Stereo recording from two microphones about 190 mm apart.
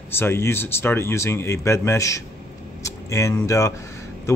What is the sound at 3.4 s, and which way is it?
Speech, 15° left (ahead or behind).